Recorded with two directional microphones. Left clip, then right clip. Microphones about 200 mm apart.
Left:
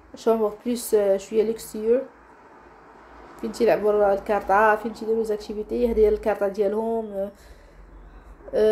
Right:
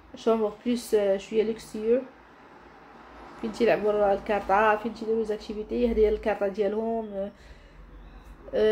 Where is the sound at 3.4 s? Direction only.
25° left (ahead or behind).